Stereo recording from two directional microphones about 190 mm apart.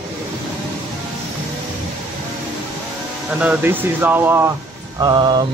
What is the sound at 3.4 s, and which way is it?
Speech, 10° right (ahead or behind).